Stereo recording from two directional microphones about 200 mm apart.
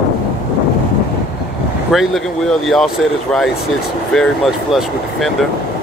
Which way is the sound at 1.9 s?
Centre (ahead or behind).